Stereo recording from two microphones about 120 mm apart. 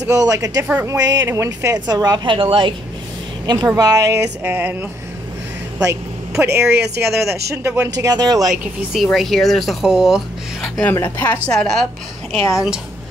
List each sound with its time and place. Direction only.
0.0 s speech: 30° right (ahead or behind)
0.7 s speech: 15° right (ahead or behind)
0.9 s speech: 30° right (ahead or behind)
3.4 s speech: 35° right (ahead or behind)
4.4 s speech: 15° right (ahead or behind)
6.4 s speech: 20° right (ahead or behind)
8.5 s speech: centre (ahead or behind)
10.8 s a woman's voice: 15° left (ahead or behind); by 12.8 s 5° right (ahead or behind)